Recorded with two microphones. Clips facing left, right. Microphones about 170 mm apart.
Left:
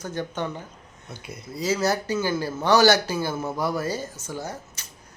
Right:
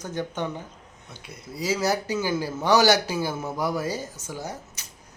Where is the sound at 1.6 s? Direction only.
15° right (ahead or behind).